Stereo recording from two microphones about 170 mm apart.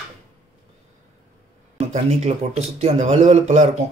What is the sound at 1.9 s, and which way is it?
A man's voice, 40° right (ahead or behind).